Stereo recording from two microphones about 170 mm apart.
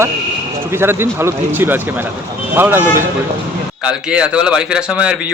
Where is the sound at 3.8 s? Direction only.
5° right (ahead or behind).